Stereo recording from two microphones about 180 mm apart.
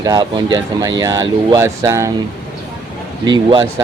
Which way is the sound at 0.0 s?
20° right (ahead or behind).